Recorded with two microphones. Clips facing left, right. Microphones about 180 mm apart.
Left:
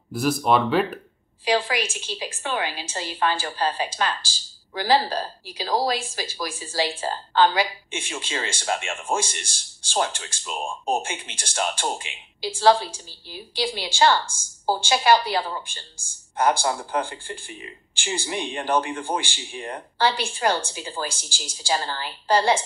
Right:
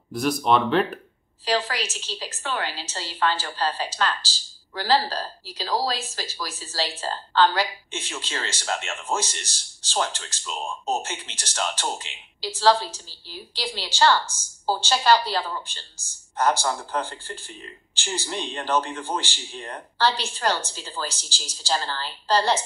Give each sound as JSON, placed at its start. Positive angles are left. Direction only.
{"t": 0.1, "sound": "speech", "side_deg": 5}
{"t": 16.6, "sound": "speech", "side_deg": 10}
{"t": 21.1, "sound": "speech", "side_deg": 55}
{"t": 21.6, "sound": "speech", "side_deg": 15}